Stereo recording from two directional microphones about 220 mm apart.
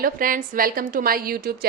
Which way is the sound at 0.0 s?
40° right (ahead or behind).